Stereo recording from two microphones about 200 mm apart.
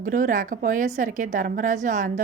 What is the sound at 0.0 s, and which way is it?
A woman's voice, 40° right (ahead or behind).